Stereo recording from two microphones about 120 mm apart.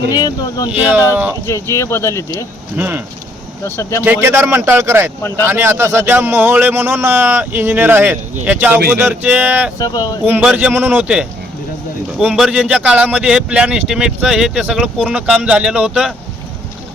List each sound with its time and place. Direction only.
0.1 s speech: 35° left (ahead or behind)
0.8 s speech: 15° right (ahead or behind)
1.5 s speech: 25° left (ahead or behind)
2.7 s speech: 15° right (ahead or behind)
3.6 s speech: 25° left (ahead or behind)
4.0 s a man's voice: 20° right (ahead or behind)
9.7 s speech: 30° left (ahead or behind)
10.4 s speech: 10° right (ahead or behind)